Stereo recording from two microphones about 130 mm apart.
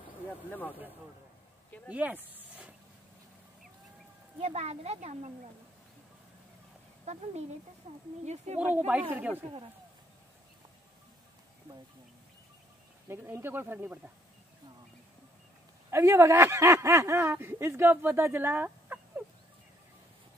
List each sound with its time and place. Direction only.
0.5 s speech: 15° left (ahead or behind)
1.9 s speech: 10° right (ahead or behind)
4.4 s speech: 55° right (ahead or behind)
7.1 s speech: 60° right (ahead or behind)
8.5 s speech: 10° right (ahead or behind)
13.1 s speech: 15° right (ahead or behind)
15.9 s speech: 20° right (ahead or behind)